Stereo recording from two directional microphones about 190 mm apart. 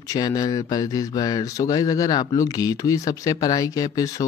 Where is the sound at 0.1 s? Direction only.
20° left (ahead or behind).